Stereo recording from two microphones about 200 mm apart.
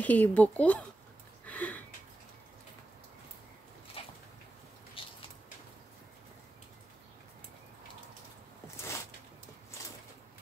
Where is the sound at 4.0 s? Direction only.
30° left (ahead or behind).